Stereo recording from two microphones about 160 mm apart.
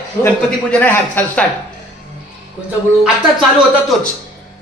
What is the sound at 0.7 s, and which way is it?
Speech, 10° left (ahead or behind).